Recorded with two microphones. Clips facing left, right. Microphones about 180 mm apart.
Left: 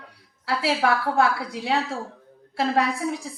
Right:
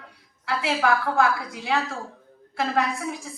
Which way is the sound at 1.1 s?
30° left (ahead or behind).